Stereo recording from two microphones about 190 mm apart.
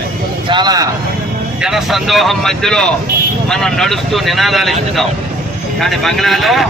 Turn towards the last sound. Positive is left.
turn(degrees=0)  # may be behind; listen again after turning